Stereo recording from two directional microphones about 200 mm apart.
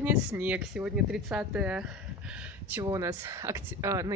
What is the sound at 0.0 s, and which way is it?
Speech, 10° right (ahead or behind).